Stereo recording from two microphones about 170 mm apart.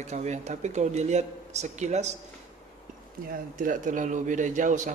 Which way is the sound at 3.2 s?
55° right (ahead or behind).